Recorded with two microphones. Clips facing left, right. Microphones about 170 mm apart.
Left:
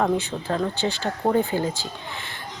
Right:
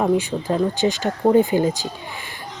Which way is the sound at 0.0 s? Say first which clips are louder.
Right 4 dB; 15° right (ahead or behind).